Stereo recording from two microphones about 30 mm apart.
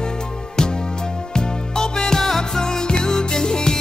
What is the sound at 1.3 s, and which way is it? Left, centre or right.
Music, left.